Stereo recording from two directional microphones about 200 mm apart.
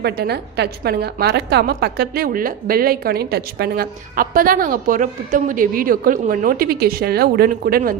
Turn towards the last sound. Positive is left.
turn(degrees=-45)  # may be behind; listen again after turning